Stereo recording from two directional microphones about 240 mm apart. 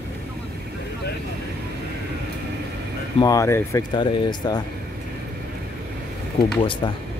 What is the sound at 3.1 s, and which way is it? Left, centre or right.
Speech, centre.